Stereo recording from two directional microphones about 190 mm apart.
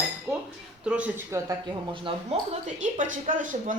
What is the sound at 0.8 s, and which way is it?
Speech, 5° right (ahead or behind).